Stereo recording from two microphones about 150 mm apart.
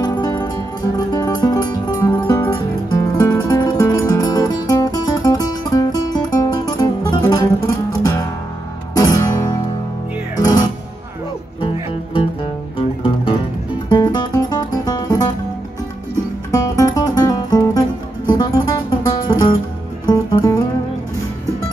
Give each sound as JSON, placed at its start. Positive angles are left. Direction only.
{"t": 0.0, "sound": "music", "side_deg": 30}
{"t": 11.6, "sound": "music", "side_deg": 35}
{"t": 16.5, "sound": "music", "side_deg": 20}